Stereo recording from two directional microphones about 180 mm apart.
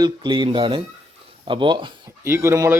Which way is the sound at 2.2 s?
15° right (ahead or behind).